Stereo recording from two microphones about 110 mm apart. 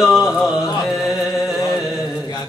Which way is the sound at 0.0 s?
Centre (ahead or behind).